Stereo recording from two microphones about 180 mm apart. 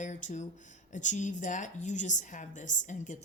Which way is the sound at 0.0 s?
45° left (ahead or behind).